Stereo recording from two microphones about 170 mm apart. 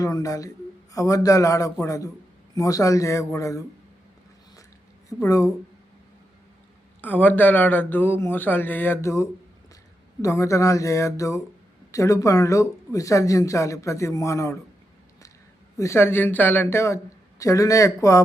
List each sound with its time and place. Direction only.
0.0 s speech: 20° left (ahead or behind)
5.0 s speech: 20° left (ahead or behind)
7.0 s speech: 10° left (ahead or behind)
15.8 s speech: 15° left (ahead or behind)